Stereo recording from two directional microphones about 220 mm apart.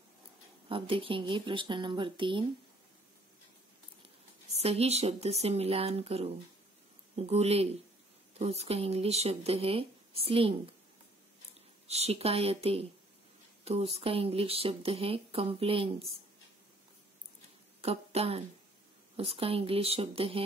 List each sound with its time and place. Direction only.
0.7 s speech: 25° right (ahead or behind)
4.6 s speech: 30° right (ahead or behind)
11.9 s speech: 30° right (ahead or behind)
17.8 s speech: 25° right (ahead or behind)